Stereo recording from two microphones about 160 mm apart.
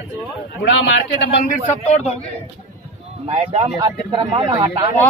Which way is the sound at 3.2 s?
40° right (ahead or behind).